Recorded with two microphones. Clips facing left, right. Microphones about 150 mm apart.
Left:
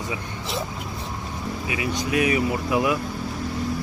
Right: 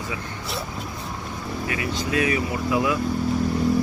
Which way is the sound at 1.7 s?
15° left (ahead or behind).